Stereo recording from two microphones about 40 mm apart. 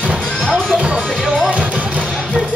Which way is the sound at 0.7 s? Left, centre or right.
Centre.